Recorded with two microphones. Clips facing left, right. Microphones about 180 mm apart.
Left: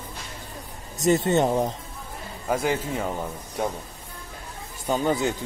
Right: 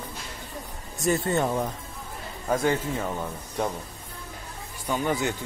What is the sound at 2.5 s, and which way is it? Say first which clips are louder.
Speech: even; 10° left (ahead or behind).